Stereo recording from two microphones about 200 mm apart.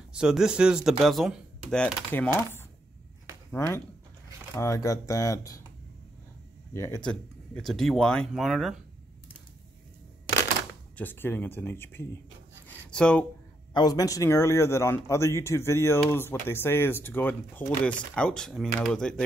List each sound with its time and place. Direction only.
0.1 s speech: 5° right (ahead or behind)
4.6 s a man's voice: 15° left (ahead or behind)
6.7 s speech: 15° left (ahead or behind)
11.0 s a man's voice: 10° left (ahead or behind)
12.6 s a sound: 5° left (ahead or behind)
13.7 s a man's voice: 20° left (ahead or behind)